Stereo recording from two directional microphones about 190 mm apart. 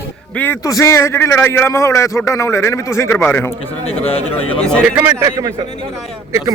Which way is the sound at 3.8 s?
30° left (ahead or behind).